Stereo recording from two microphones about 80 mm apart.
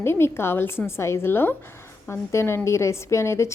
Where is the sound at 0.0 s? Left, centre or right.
Left.